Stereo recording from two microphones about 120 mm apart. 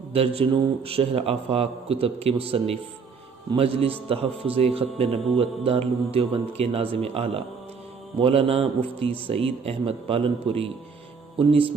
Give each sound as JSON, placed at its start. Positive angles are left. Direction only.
{"t": 0.1, "sound": "a man's voice", "side_deg": -55}